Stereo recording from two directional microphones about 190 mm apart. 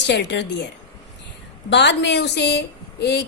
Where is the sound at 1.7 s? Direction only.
65° left (ahead or behind).